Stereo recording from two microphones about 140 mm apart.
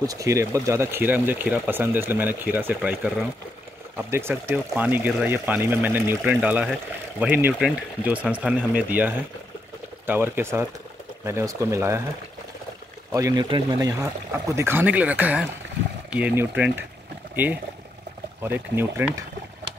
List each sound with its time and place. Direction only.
0.0 s speech: 25° right (ahead or behind)
13.1 s speech: 25° right (ahead or behind)
14.5 s speech: 15° right (ahead or behind)
18.4 s speech: 15° right (ahead or behind)